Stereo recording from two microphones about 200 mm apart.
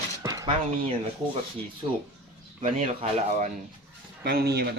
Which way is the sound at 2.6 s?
30° right (ahead or behind).